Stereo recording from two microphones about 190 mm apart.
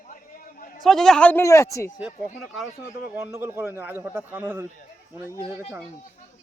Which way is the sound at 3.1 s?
10° right (ahead or behind).